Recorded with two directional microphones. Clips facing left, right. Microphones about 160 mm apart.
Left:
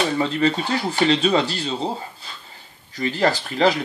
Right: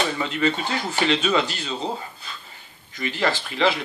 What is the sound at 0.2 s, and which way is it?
Speech, 35° left (ahead or behind).